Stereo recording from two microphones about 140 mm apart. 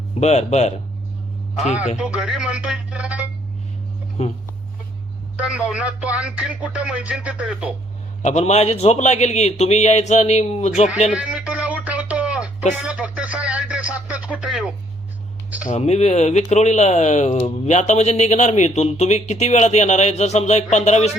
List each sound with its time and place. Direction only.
0.2 s speech: 50° left (ahead or behind)
2.0 s music: 10° right (ahead or behind)
4.2 s speech: 50° left (ahead or behind)
5.4 s music: 10° right (ahead or behind)
8.2 s speech: 55° left (ahead or behind)
11.1 s a sound: 5° right (ahead or behind)
12.8 s speech: 5° right (ahead or behind)
15.6 s speech: 55° left (ahead or behind)